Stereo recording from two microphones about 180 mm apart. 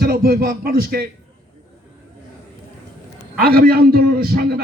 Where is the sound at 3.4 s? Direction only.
55° right (ahead or behind).